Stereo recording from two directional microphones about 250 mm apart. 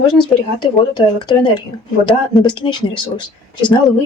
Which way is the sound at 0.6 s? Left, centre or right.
Centre.